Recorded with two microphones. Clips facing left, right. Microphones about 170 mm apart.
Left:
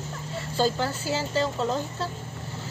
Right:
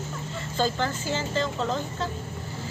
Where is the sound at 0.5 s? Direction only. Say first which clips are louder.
Left 1 dB; 10° left (ahead or behind).